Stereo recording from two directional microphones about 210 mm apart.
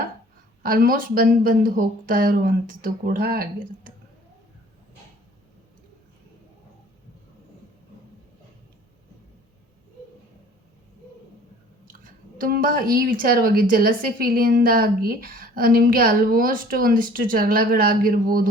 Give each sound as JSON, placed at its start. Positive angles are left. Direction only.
{"t": 0.6, "sound": "speech", "side_deg": -45}
{"t": 11.9, "sound": "speech", "side_deg": -40}